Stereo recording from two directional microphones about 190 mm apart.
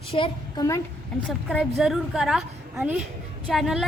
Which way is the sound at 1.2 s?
Centre (ahead or behind).